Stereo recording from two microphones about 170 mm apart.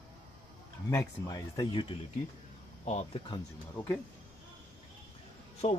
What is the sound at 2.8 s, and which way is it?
Speech, 40° left (ahead or behind).